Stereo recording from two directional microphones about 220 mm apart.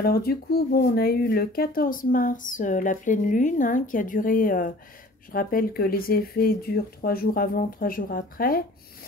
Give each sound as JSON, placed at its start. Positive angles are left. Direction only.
{"t": 0.0, "sound": "speech", "side_deg": 45}